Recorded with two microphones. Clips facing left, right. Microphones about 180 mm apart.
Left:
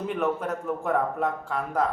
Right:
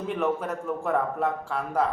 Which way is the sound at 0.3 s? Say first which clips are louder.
Left 1 dB; 5° right (ahead or behind).